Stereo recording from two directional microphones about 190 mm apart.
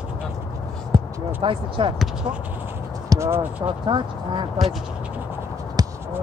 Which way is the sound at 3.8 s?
25° right (ahead or behind).